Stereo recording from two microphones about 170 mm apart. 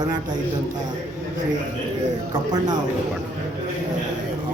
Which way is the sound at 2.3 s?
25° right (ahead or behind).